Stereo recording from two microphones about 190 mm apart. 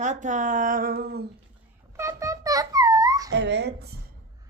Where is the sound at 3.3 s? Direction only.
65° right (ahead or behind).